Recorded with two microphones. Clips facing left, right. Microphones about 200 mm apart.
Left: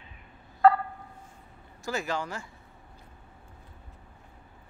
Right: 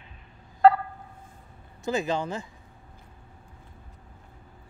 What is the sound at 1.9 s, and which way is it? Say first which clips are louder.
Speech: right 5 dB; 20° right (ahead or behind).